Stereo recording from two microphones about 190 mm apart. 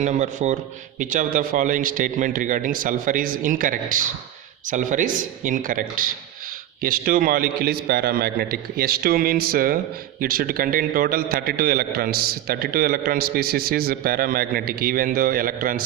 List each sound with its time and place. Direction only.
0.0 s a man's voice: 40° right (ahead or behind)